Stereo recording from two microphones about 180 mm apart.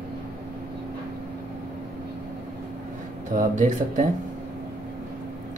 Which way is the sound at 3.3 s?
45° right (ahead or behind).